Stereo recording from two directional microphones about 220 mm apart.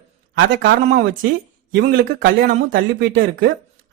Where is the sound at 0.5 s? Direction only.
55° right (ahead or behind).